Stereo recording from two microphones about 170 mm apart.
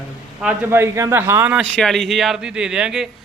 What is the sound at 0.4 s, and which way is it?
A man's voice, 15° right (ahead or behind).